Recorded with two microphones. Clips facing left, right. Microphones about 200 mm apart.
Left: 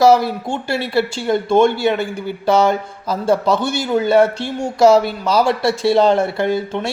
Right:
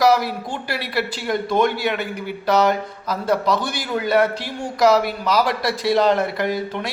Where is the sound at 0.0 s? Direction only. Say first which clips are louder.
Left 5 dB; 25° left (ahead or behind).